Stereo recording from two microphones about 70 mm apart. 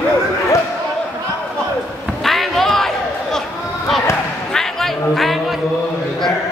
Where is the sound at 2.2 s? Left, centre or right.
Centre.